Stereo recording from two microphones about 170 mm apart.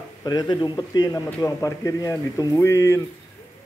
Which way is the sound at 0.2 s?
20° left (ahead or behind).